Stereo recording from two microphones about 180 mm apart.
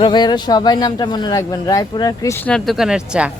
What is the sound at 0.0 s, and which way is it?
Speech, 25° left (ahead or behind).